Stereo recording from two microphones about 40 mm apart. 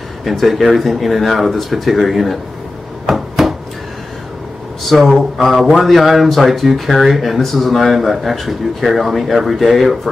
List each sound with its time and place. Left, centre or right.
0.2 s speech: centre
3.1 s a sound: centre
4.9 s speech: left
5.4 s speech: centre